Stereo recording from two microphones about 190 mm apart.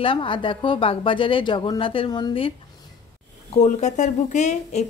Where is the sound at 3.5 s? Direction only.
35° left (ahead or behind).